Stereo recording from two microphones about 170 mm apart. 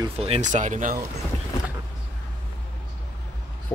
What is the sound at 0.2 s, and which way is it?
Speech, 40° right (ahead or behind).